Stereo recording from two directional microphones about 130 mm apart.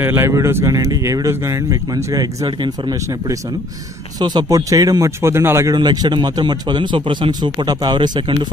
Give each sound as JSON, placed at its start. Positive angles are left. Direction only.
{"t": 0.0, "sound": "speech", "side_deg": -20}
{"t": 4.2, "sound": "speech", "side_deg": -35}
{"t": 5.8, "sound": "a man's voice", "side_deg": -35}